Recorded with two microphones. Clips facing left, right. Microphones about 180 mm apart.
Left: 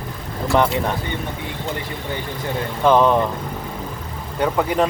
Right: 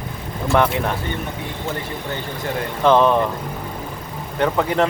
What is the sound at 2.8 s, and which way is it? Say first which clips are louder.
Speech: even; 10° left (ahead or behind).